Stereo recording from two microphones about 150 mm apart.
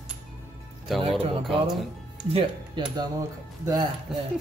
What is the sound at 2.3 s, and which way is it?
Speech, 30° right (ahead or behind).